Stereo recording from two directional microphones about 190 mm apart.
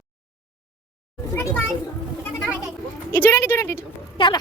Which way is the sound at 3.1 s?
10° left (ahead or behind).